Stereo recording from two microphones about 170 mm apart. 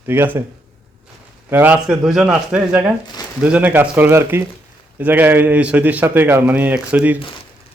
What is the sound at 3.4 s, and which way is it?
A man's voice, 10° right (ahead or behind).